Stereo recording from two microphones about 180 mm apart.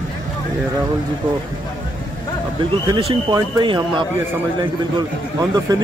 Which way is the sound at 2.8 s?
30° right (ahead or behind).